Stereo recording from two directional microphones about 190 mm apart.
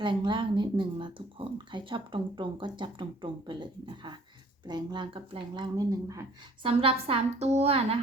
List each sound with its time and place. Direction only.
0.0 s speech: 25° right (ahead or behind)
6.7 s a woman's voice: 30° right (ahead or behind)